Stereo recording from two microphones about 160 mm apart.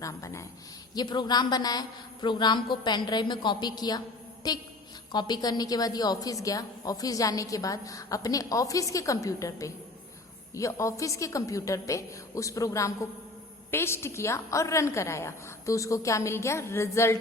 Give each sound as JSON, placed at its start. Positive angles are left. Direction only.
{"t": 0.0, "sound": "a woman's voice", "side_deg": 20}